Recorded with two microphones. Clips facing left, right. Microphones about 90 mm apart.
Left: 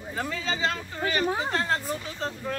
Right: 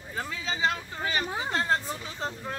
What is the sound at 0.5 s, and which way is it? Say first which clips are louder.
Speech: even; 20° right (ahead or behind).